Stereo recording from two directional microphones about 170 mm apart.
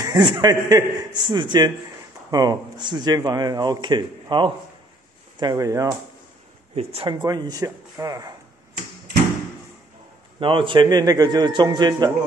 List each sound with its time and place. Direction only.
0.0 s speech: 25° right (ahead or behind)
6.7 s speech: 35° right (ahead or behind)
7.2 s speech: 25° right (ahead or behind)
10.4 s speech: 30° right (ahead or behind)